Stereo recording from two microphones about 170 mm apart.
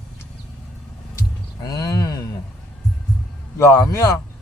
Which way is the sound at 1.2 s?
25° left (ahead or behind).